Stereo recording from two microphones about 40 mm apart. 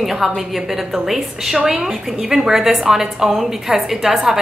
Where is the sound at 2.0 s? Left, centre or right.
Centre.